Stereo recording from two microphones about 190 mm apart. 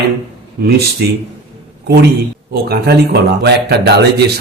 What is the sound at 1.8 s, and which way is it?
A man's voice, 55° right (ahead or behind).